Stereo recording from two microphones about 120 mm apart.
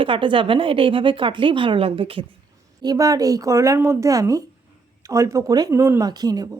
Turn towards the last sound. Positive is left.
turn(degrees=-35)  # may be behind; listen again after turning